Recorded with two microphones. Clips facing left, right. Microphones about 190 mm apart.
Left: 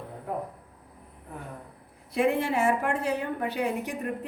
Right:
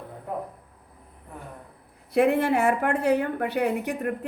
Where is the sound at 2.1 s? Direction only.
65° right (ahead or behind).